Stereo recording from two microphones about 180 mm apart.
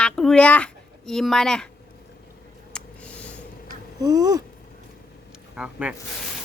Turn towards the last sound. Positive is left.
turn(degrees=-5)  # may be behind; listen again after turning